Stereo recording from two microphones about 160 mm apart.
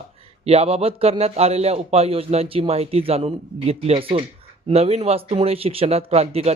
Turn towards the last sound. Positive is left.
turn(degrees=-40)  # may be behind; listen again after turning